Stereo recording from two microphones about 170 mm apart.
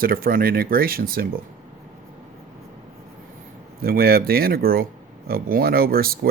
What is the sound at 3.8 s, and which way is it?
Speech, 65° right (ahead or behind).